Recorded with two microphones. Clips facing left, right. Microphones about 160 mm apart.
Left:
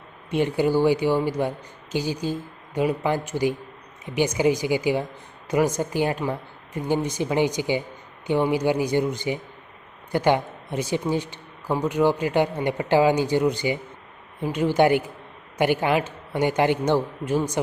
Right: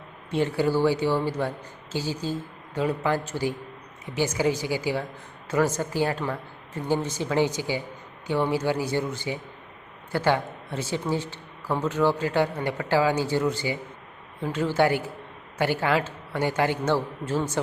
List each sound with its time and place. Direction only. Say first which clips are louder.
0.3 s speech: left 2 dB; 15° left (ahead or behind)